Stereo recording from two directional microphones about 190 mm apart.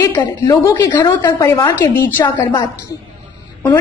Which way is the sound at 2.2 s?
25° left (ahead or behind).